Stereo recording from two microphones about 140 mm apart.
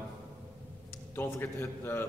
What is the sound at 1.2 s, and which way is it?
Speech, 20° left (ahead or behind).